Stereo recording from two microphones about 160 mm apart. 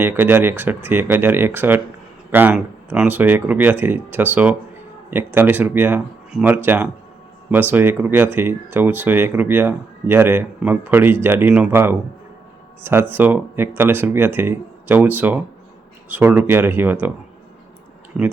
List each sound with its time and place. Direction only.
0.0 s speech: 10° right (ahead or behind)